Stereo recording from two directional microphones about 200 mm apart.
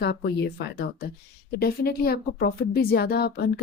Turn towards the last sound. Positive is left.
turn(degrees=55)  # may be behind; listen again after turning